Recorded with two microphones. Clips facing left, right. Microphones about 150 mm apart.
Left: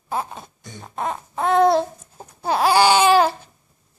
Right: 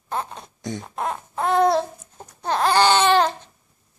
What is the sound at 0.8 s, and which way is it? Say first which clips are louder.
Baby cry: left 5 dB; centre (ahead or behind).